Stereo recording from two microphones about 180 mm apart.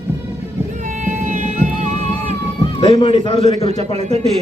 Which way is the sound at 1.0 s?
45° right (ahead or behind).